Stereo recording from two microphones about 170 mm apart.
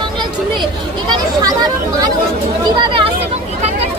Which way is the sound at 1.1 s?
25° right (ahead or behind).